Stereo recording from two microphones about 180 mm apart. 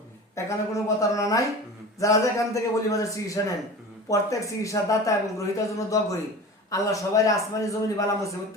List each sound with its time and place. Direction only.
0.3 s a man's voice: 15° left (ahead or behind)